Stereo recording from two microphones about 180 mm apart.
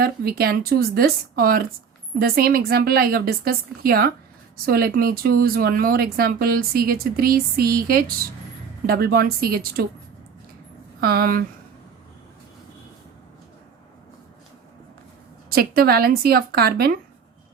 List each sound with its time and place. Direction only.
0.0 s speech: 60° right (ahead or behind)
11.0 s speech: 55° right (ahead or behind)
15.4 s speech: 55° right (ahead or behind)